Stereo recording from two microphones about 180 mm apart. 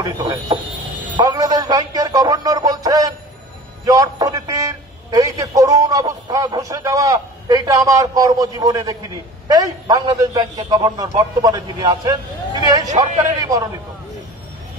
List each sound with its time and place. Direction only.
0.0 s a man's voice: 20° right (ahead or behind)